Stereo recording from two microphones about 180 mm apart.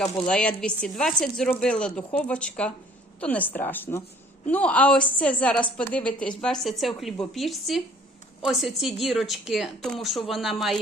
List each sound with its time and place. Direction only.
0.0 s a woman's voice: 5° left (ahead or behind)